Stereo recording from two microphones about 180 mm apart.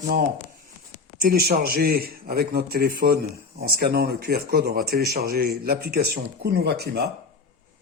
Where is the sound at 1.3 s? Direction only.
55° right (ahead or behind).